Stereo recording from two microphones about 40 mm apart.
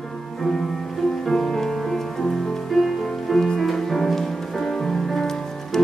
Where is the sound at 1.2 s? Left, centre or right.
Centre.